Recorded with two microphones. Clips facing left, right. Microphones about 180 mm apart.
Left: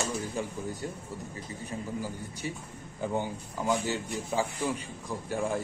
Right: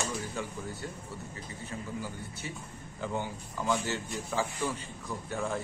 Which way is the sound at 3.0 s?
15° left (ahead or behind).